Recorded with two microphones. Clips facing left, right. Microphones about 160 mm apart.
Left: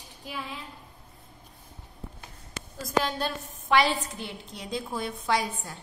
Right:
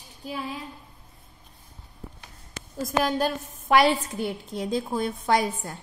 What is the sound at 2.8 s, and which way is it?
A woman's voice, 45° right (ahead or behind).